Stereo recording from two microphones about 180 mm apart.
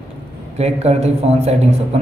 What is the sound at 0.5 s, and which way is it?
A man's voice, 35° right (ahead or behind).